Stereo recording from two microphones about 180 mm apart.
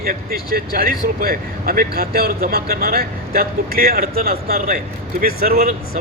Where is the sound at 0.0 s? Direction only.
55° right (ahead or behind).